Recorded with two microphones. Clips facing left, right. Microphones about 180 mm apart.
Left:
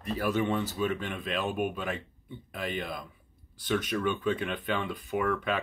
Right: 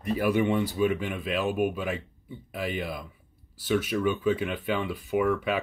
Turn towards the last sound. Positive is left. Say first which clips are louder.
# right 4 dB
turn(degrees=-5)  # may be behind; listen again after turning